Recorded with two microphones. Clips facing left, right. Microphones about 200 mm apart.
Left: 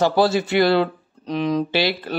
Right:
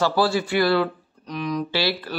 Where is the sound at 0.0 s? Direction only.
20° left (ahead or behind).